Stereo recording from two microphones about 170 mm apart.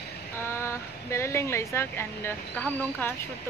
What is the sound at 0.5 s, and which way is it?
Speech, 15° left (ahead or behind).